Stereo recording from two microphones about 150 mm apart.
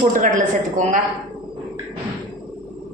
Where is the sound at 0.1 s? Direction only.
60° right (ahead or behind).